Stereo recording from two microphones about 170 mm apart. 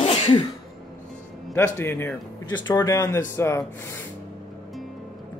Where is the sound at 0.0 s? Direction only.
35° left (ahead or behind).